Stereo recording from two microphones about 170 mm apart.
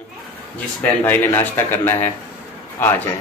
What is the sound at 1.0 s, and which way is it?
A man's voice, 15° left (ahead or behind).